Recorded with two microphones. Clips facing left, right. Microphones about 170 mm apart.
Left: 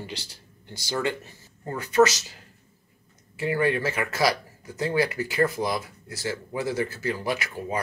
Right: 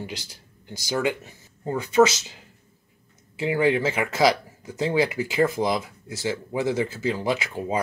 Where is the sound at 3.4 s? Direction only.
20° right (ahead or behind).